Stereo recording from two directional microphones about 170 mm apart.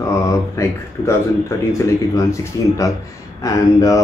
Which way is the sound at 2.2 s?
20° left (ahead or behind).